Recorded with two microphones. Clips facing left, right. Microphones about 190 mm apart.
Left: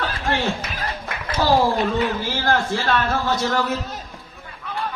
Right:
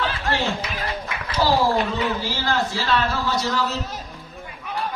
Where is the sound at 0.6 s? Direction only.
50° left (ahead or behind).